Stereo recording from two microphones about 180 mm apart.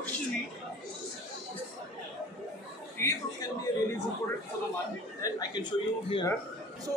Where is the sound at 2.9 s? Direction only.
15° left (ahead or behind).